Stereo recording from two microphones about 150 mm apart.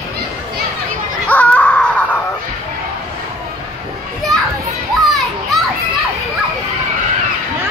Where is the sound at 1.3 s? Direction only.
10° left (ahead or behind).